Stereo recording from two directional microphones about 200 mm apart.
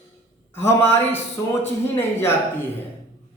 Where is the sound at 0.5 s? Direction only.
10° left (ahead or behind).